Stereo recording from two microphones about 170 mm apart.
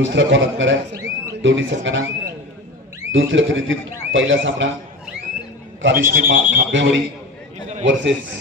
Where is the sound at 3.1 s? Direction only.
90° right.